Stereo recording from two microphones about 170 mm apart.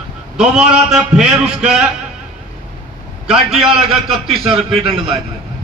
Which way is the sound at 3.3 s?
Centre (ahead or behind).